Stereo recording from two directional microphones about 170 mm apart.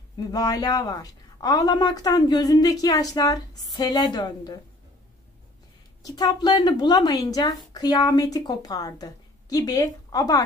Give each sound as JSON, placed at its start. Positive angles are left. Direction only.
{"t": 0.3, "sound": "a woman's voice", "side_deg": 20}
{"t": 6.0, "sound": "a woman's voice", "side_deg": 25}